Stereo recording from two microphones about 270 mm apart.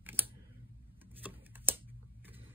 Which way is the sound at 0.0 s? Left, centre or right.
Centre.